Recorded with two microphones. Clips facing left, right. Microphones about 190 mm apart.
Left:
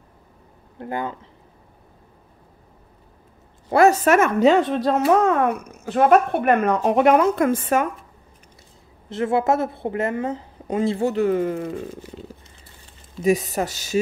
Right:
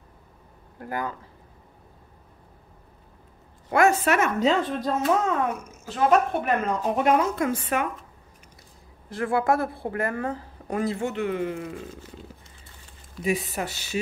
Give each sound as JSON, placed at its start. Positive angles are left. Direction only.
{"t": 0.7, "sound": "speech", "side_deg": 25}
{"t": 3.7, "sound": "speech", "side_deg": 35}
{"t": 4.4, "sound": "a woman's voice", "side_deg": 75}
{"t": 9.1, "sound": "speech", "side_deg": 25}
{"t": 13.2, "sound": "speech", "side_deg": 40}